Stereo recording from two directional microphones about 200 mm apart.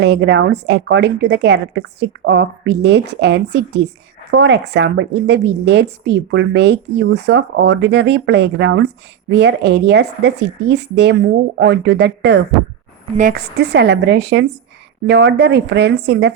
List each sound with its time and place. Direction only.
0.0 s a woman's voice: 60° right (ahead or behind)
13.1 s a woman's voice: 45° right (ahead or behind)